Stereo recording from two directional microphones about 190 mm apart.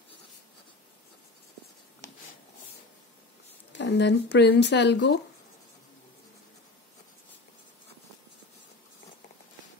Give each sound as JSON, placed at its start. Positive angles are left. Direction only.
{"t": 3.7, "sound": "speech", "side_deg": 65}